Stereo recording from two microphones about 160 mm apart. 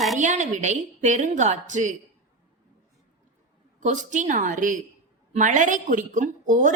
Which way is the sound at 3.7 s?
50° right (ahead or behind).